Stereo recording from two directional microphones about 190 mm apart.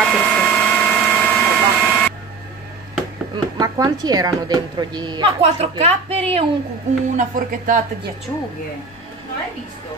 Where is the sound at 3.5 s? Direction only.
20° right (ahead or behind).